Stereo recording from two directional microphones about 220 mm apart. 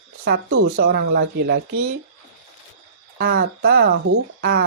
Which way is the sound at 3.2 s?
45° right (ahead or behind).